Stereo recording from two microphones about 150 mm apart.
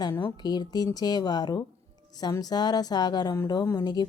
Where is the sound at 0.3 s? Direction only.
25° left (ahead or behind).